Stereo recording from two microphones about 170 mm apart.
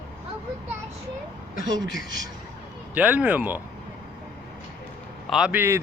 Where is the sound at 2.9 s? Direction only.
10° right (ahead or behind).